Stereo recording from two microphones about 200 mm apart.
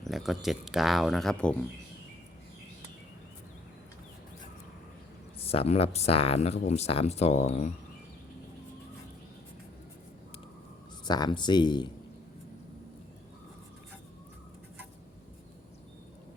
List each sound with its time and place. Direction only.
0.0 s speech: centre (ahead or behind)
5.4 s speech: 30° left (ahead or behind)
11.0 s speech: 20° left (ahead or behind)